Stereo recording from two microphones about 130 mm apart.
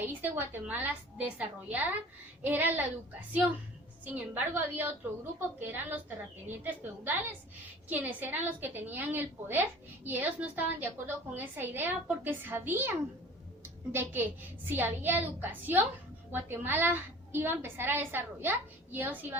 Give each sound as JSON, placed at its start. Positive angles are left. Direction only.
{"t": 0.1, "sound": "a woman's voice", "side_deg": -15}
{"t": 4.0, "sound": "a woman's voice", "side_deg": -15}